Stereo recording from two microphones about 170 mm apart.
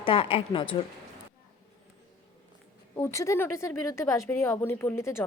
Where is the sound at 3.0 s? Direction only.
15° left (ahead or behind).